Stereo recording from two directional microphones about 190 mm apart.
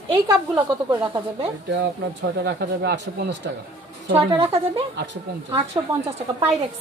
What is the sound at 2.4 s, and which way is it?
Speech, 60° right (ahead or behind).